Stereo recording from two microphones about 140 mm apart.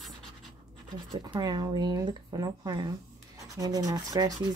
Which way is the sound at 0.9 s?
30° right (ahead or behind).